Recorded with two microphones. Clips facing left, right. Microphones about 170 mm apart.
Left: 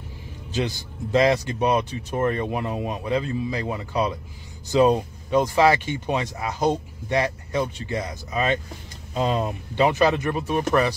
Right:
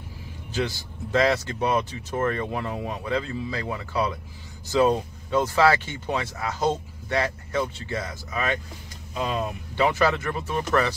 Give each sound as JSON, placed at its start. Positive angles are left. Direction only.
{"t": 0.5, "sound": "speech", "side_deg": 15}
{"t": 9.8, "sound": "speech", "side_deg": 20}